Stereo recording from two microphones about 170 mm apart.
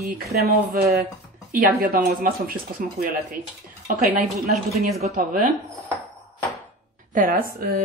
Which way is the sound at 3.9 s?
55° right (ahead or behind).